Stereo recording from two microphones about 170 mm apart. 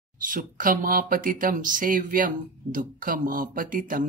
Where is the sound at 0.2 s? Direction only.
55° right (ahead or behind).